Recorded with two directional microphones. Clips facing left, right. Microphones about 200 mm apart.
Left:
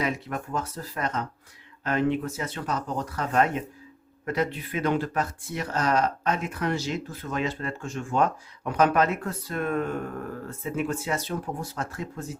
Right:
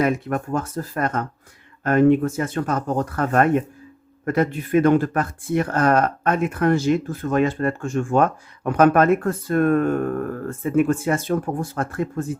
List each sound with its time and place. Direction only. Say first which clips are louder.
0.0 s speech: right 8 dB; 50° right (ahead or behind)